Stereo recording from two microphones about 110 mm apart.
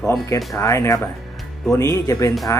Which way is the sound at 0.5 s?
25° left (ahead or behind).